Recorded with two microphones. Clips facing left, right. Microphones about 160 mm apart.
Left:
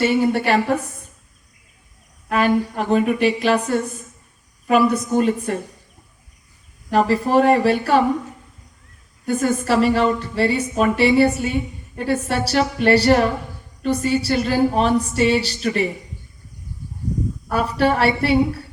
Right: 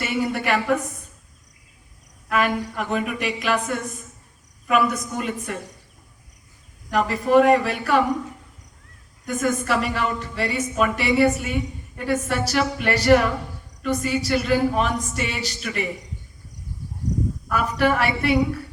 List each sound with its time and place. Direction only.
0.0 s a woman's voice: 30° left (ahead or behind)
2.3 s a woman's voice: 30° left (ahead or behind)
6.9 s a woman's voice: 30° left (ahead or behind)
9.2 s a woman's voice: 30° left (ahead or behind)
17.5 s a woman's voice: 30° left (ahead or behind)